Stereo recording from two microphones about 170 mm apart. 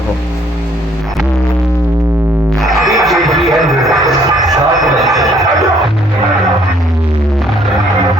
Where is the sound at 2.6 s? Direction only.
Centre (ahead or behind).